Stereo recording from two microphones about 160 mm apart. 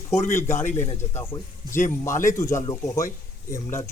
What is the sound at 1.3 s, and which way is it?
Speech, 30° left (ahead or behind).